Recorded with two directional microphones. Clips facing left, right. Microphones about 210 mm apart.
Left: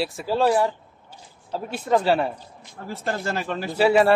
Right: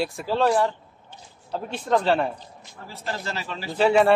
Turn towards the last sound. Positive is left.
turn(degrees=5)  # may be behind; listen again after turning